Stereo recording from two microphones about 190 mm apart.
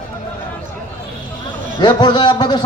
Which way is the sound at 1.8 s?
20° left (ahead or behind).